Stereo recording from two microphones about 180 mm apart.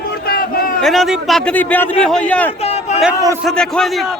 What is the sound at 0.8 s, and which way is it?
A man's voice, centre (ahead or behind).